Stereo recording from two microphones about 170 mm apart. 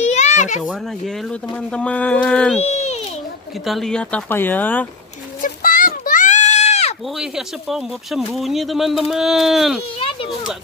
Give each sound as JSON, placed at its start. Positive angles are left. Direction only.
{"t": 0.0, "sound": "a sound", "side_deg": 45}
{"t": 0.6, "sound": "speech", "side_deg": 0}
{"t": 2.6, "sound": "a sound", "side_deg": 40}
{"t": 3.6, "sound": "speech", "side_deg": 0}
{"t": 5.4, "sound": "goat", "side_deg": 55}
{"t": 7.2, "sound": "speech", "side_deg": 0}